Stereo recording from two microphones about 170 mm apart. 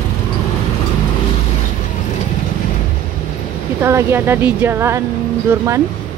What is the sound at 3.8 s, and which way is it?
Speech, 15° right (ahead or behind).